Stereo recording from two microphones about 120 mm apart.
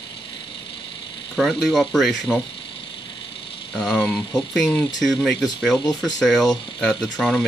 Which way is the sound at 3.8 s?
Centre (ahead or behind).